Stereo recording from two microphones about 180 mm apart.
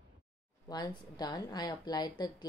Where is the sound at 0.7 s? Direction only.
20° left (ahead or behind).